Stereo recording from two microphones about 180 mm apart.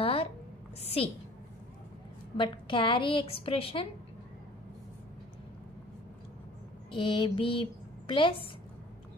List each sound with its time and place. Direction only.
0.0 s a sound: 30° left (ahead or behind)
0.7 s a woman's voice: 35° left (ahead or behind)
2.3 s a woman's voice: 25° left (ahead or behind)
6.9 s a woman's voice: 25° left (ahead or behind)